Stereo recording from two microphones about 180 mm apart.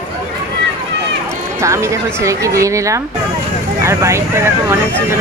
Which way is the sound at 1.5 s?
15° right (ahead or behind).